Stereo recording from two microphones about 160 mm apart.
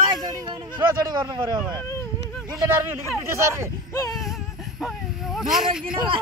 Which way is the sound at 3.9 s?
20° left (ahead or behind).